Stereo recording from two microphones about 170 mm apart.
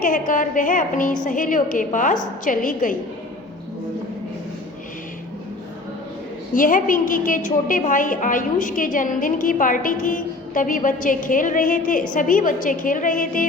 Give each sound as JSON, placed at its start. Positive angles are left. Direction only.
{"t": 0.0, "sound": "a woman's voice", "side_deg": 50}
{"t": 6.5, "sound": "a woman's voice", "side_deg": 55}